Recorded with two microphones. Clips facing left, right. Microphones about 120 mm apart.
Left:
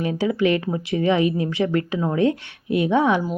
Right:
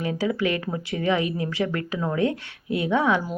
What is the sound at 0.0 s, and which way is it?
Speech, 25° left (ahead or behind).